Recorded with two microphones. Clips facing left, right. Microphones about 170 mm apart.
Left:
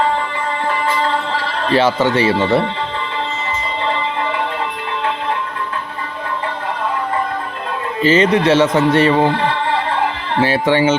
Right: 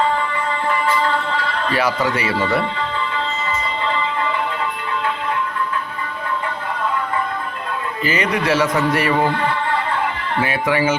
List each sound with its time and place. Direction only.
1.6 s speech: 25° left (ahead or behind)
8.0 s speech: 25° left (ahead or behind)